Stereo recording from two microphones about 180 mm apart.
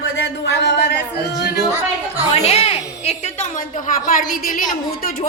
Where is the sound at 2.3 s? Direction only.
35° left (ahead or behind).